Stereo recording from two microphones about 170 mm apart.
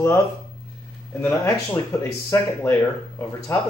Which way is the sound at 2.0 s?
15° left (ahead or behind).